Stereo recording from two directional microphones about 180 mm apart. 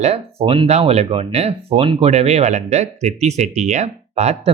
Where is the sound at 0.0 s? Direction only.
35° right (ahead or behind).